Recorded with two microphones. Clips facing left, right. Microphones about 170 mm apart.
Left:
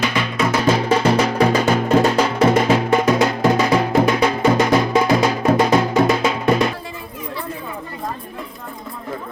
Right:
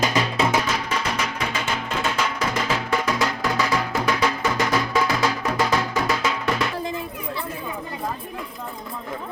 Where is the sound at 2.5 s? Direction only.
60° left (ahead or behind).